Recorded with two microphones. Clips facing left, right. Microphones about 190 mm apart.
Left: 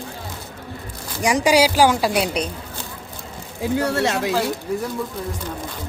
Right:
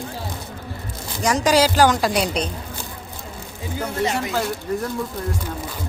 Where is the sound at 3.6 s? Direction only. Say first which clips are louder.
Left 4 dB; 75° left (ahead or behind).